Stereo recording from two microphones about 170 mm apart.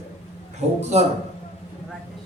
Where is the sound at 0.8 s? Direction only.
40° right (ahead or behind).